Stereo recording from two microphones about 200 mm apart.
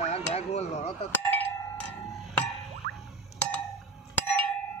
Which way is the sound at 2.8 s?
55° right (ahead or behind).